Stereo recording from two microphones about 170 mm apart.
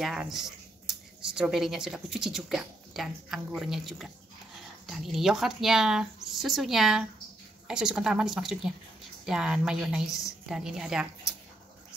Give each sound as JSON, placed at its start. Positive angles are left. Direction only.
{"t": 0.0, "sound": "speech", "side_deg": 0}